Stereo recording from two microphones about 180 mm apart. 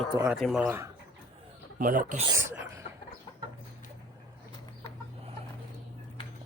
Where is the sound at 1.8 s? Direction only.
45° right (ahead or behind).